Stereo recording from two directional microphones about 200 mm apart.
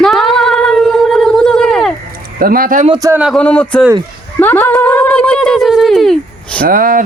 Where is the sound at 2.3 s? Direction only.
45° right (ahead or behind).